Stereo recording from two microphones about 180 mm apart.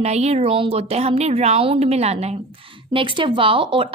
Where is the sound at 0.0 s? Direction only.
35° right (ahead or behind).